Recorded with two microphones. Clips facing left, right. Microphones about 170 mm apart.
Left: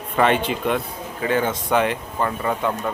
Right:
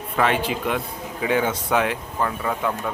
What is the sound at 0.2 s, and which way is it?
Speech, 5° right (ahead or behind).